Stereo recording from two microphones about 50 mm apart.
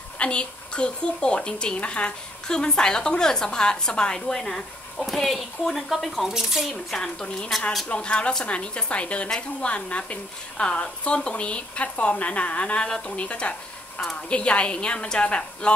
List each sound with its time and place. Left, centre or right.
0.2 s a woman's voice: left; by 6.8 s centre
6.9 s a woman's voice: centre